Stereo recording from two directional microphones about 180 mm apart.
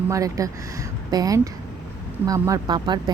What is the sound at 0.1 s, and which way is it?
Speech, 20° right (ahead or behind).